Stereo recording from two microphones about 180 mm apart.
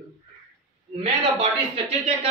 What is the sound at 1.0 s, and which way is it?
Speech, 35° right (ahead or behind).